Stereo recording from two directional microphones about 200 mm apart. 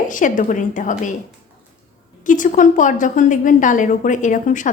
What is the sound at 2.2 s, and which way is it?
A woman's voice, 40° left (ahead or behind).